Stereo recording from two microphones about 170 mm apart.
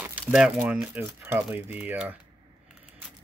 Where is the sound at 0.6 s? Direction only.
10° right (ahead or behind).